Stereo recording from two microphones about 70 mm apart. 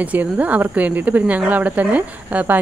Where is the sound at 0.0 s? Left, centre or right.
Right.